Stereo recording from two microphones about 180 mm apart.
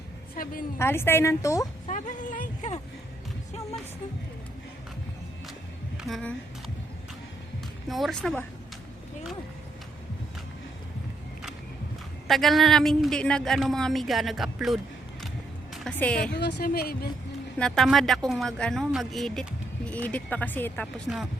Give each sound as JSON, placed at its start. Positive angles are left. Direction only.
{"t": 0.8, "sound": "a woman's voice", "side_deg": 15}
{"t": 1.9, "sound": "speech", "side_deg": 45}
{"t": 6.0, "sound": "speech", "side_deg": 0}
{"t": 7.9, "sound": "speech", "side_deg": 0}
{"t": 12.3, "sound": "a woman's voice", "side_deg": 0}
{"t": 16.3, "sound": "a woman's voice", "side_deg": 70}
{"t": 17.6, "sound": "speech", "side_deg": 5}